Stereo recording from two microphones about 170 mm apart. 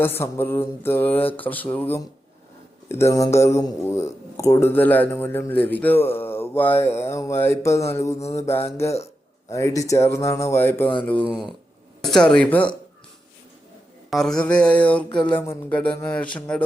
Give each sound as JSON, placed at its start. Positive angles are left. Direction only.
{"t": 0.0, "sound": "speech", "side_deg": 15}
{"t": 8.4, "sound": "speech", "side_deg": 35}
{"t": 9.5, "sound": "speech", "side_deg": 15}
{"t": 11.3, "sound": "speech", "side_deg": 0}
{"t": 14.1, "sound": "speech", "side_deg": 0}